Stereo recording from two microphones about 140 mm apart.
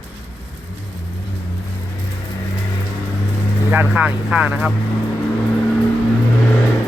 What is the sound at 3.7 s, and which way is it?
Speech, 10° right (ahead or behind).